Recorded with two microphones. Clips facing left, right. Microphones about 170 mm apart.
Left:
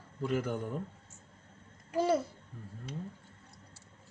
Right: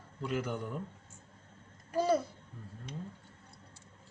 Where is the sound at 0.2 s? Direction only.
45° left (ahead or behind).